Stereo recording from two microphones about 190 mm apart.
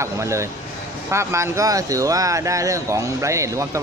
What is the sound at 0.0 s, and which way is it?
Speech, 15° right (ahead or behind).